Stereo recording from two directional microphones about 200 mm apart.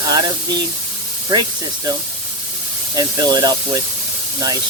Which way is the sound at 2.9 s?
20° right (ahead or behind).